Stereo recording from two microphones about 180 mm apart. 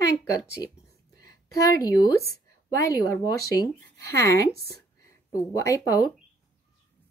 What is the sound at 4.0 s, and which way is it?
Speech, 15° left (ahead or behind).